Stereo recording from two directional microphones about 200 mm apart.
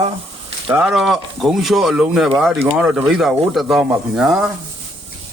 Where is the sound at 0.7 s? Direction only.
5° right (ahead or behind).